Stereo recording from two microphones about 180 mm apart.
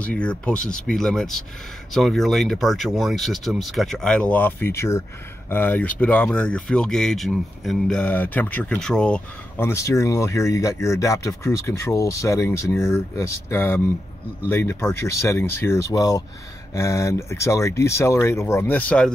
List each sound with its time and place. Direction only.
0.0 s speech: 5° left (ahead or behind)